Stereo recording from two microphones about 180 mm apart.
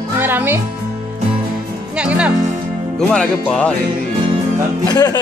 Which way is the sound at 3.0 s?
5° left (ahead or behind).